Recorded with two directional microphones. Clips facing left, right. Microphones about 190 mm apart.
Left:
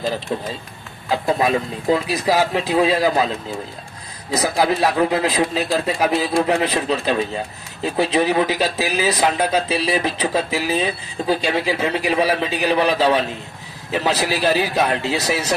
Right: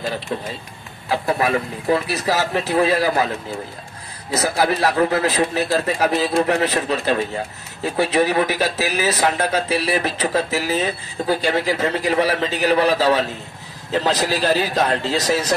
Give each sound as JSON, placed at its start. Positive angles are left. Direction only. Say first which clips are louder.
{"t": 0.3, "sound": "speech", "louder": "left 2 dB", "side_deg": 25}
{"t": 4.3, "sound": "speech", "louder": "left 1 dB", "side_deg": 15}
{"t": 13.9, "sound": "speech", "louder": "right 1 dB", "side_deg": 10}